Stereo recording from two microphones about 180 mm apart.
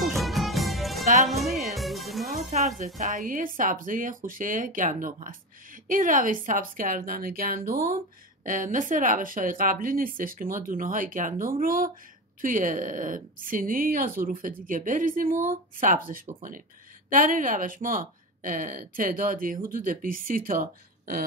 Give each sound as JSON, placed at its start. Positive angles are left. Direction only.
{"t": 0.1, "sound": "music", "side_deg": 0}
{"t": 3.0, "sound": "a woman's voice", "side_deg": -45}